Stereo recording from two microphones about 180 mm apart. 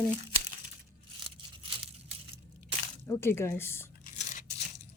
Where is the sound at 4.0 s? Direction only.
45° left (ahead or behind).